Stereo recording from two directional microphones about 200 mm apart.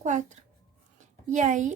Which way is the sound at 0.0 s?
40° right (ahead or behind).